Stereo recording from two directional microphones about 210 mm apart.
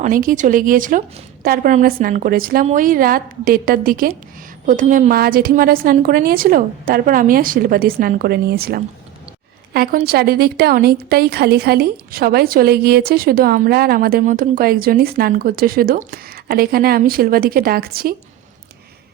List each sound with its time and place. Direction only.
0.0 s a woman's voice: 40° right (ahead or behind)